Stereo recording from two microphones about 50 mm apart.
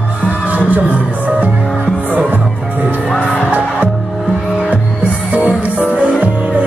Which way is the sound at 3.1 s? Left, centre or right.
Left.